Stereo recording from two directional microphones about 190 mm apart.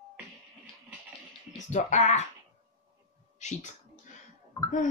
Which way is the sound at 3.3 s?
35° left (ahead or behind).